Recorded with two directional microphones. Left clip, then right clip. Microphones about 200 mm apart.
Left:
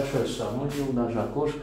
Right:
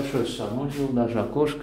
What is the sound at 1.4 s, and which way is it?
Speech, 35° right (ahead or behind).